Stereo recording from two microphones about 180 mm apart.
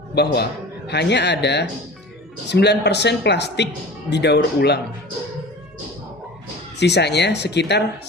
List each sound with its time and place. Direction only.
0.1 s a man's voice: 65° left (ahead or behind)
6.7 s a man's voice: 70° left (ahead or behind)